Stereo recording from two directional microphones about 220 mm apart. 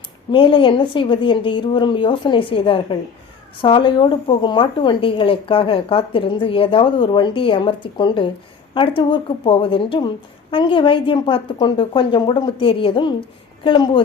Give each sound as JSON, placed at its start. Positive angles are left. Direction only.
{"t": 0.3, "sound": "a woman's voice", "side_deg": 25}